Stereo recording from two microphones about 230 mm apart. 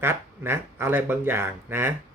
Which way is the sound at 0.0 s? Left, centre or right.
Centre.